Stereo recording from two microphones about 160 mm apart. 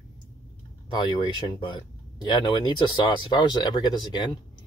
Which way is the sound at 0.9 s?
30° left (ahead or behind).